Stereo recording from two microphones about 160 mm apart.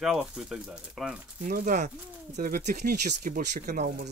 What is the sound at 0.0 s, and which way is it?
Speech, 5° right (ahead or behind).